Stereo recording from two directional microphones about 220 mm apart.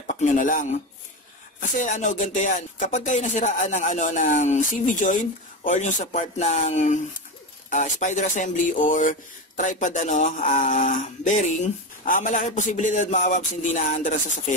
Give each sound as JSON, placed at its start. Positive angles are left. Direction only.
{"t": 0.0, "sound": "speech", "side_deg": 35}